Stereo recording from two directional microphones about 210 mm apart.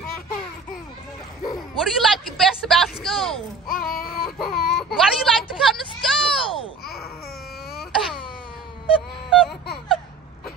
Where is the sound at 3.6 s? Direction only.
45° left (ahead or behind).